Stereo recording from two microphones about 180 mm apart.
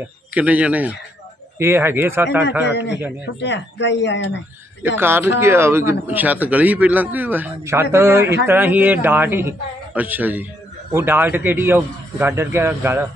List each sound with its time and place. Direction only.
0.3 s a man's voice: 10° right (ahead or behind)
2.6 s a man's voice: 70° left (ahead or behind)
4.8 s a man's voice: 10° right (ahead or behind)